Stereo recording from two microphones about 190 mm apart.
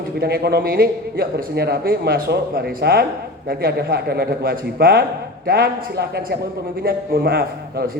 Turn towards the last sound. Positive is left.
turn(degrees=-55)  # may be behind; listen again after turning